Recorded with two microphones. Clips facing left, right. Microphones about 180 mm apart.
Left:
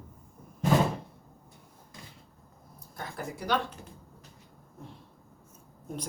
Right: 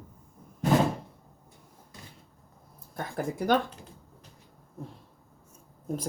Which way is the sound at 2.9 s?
50° right (ahead or behind).